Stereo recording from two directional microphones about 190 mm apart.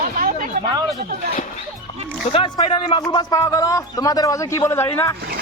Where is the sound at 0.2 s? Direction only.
45° right (ahead or behind).